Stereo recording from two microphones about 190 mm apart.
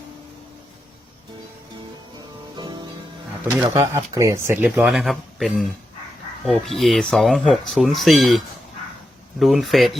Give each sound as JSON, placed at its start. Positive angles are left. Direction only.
{"t": 2.6, "sound": "music", "side_deg": -20}
{"t": 3.6, "sound": "speech", "side_deg": -15}